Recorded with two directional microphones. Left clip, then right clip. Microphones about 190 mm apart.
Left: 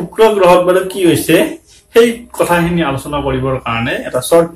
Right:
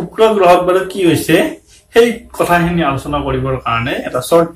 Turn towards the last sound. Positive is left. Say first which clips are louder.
# left 1 dB
turn(degrees=-5)  # may be behind; listen again after turning